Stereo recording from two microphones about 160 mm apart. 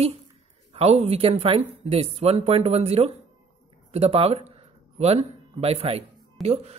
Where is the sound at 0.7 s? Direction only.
40° right (ahead or behind).